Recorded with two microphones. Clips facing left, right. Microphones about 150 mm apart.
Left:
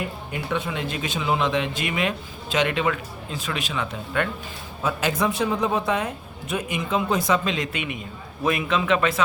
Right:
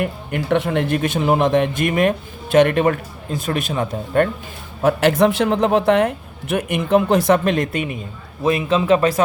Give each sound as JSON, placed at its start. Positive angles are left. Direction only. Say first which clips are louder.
{"t": 0.0, "sound": "speech", "louder": "right 7 dB", "side_deg": -60}
{"t": 4.8, "sound": "a man's voice", "louder": "right 9 dB", "side_deg": -65}
{"t": 8.4, "sound": "speech", "louder": "right 6 dB", "side_deg": -30}